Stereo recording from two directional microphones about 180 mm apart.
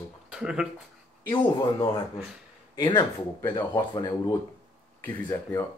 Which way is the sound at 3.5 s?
25° left (ahead or behind).